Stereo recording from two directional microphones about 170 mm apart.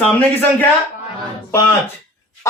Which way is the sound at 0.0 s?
10° left (ahead or behind).